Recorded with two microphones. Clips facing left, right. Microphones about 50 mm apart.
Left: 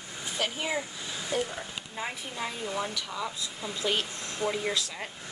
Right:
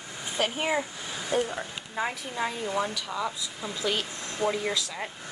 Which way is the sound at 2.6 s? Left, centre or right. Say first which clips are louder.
Right 3 dB; right.